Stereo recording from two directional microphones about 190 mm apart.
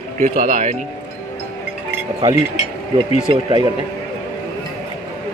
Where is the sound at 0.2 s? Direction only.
45° right (ahead or behind).